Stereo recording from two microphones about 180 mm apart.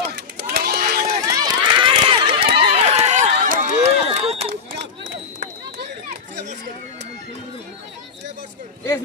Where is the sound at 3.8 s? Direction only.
35° right (ahead or behind).